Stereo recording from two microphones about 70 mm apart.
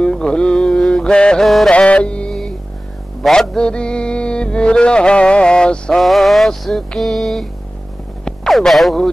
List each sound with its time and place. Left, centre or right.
0.0 s mantra: centre
1.7 s music: centre
8.3 s speech: centre